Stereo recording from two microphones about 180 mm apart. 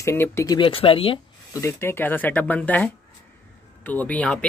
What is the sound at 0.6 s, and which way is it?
Speech, 30° left (ahead or behind).